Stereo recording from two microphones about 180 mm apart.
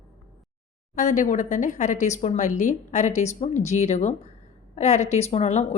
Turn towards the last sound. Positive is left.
turn(degrees=40)  # may be behind; listen again after turning